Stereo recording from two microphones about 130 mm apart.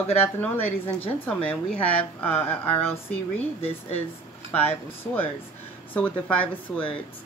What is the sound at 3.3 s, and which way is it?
Speech, 50° left (ahead or behind).